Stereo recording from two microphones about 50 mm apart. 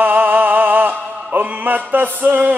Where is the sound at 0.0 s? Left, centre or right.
Right.